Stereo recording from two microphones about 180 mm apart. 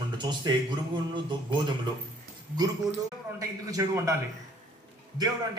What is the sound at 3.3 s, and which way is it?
Speech, 20° right (ahead or behind).